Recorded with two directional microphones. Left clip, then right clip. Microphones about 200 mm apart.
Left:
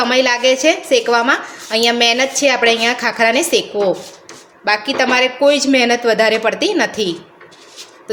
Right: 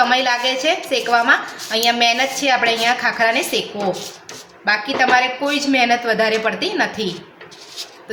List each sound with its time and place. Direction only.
0.0 s a woman's voice: 50° left (ahead or behind)
4.6 s a woman's voice: 50° left (ahead or behind)